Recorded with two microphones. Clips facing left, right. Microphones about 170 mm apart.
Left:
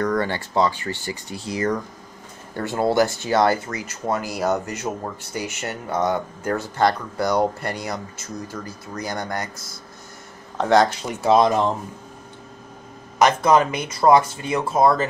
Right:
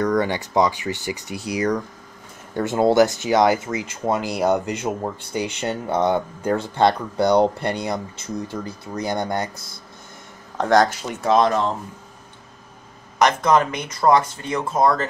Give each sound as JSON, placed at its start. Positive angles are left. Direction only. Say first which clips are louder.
{"t": 0.0, "sound": "speech", "louder": "right 2 dB", "side_deg": -15}
{"t": 10.6, "sound": "speech", "louder": "even", "side_deg": 5}
{"t": 13.2, "sound": "speech", "louder": "left 1 dB", "side_deg": 10}